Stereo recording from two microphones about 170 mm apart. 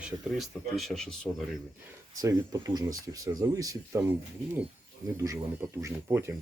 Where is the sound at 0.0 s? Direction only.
Centre (ahead or behind).